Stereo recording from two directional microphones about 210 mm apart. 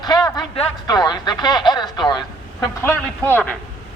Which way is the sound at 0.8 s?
20° left (ahead or behind).